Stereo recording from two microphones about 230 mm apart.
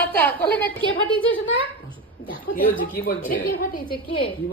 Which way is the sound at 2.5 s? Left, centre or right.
Left.